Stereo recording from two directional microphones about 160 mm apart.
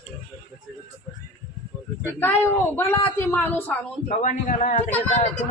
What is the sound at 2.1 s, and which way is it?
Speech, 15° left (ahead or behind).